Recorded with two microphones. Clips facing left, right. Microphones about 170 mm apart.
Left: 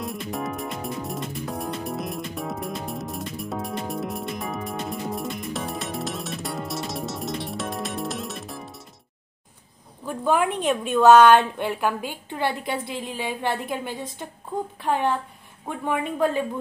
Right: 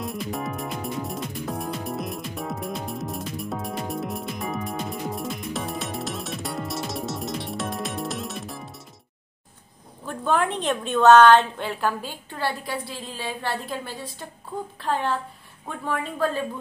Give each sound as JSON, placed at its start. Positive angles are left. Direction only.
{"t": 0.0, "sound": "music", "side_deg": 0}
{"t": 10.0, "sound": "a woman's voice", "side_deg": 10}